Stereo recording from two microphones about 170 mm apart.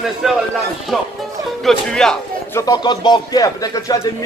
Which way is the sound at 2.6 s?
25° left (ahead or behind).